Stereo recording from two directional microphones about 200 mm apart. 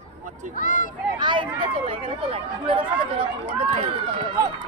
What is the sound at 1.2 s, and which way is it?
Speech, 25° right (ahead or behind).